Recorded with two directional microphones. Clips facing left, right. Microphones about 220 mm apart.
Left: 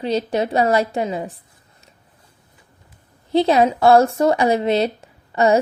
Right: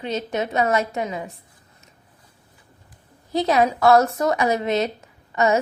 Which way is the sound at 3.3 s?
30° left (ahead or behind).